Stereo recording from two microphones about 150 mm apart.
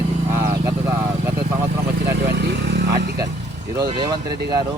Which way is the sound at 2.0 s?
90° right.